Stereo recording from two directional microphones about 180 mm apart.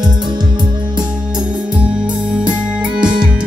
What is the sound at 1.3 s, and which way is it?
Music, 5° right (ahead or behind).